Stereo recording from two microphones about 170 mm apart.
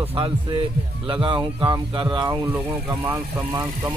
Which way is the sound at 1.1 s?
30° right (ahead or behind).